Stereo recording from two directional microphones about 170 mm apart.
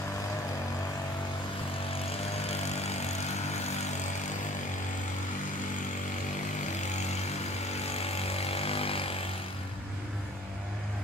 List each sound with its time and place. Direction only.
7.9 s vehicle: 40° left (ahead or behind)